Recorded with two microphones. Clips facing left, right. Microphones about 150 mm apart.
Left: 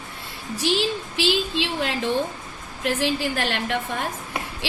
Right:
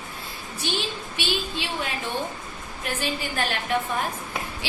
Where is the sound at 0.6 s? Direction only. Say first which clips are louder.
Left 7 dB; 90° left.